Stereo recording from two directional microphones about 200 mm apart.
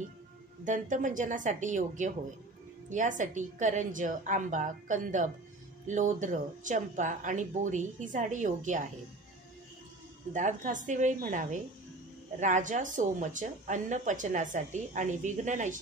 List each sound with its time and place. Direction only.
0.7 s speech: 40° right (ahead or behind)
10.3 s speech: 40° right (ahead or behind)